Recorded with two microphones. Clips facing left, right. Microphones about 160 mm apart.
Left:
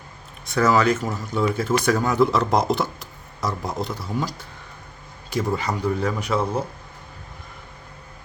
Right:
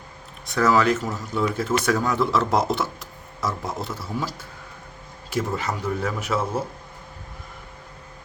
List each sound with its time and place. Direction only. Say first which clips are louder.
0.4 s speech: left 1 dB; centre (ahead or behind)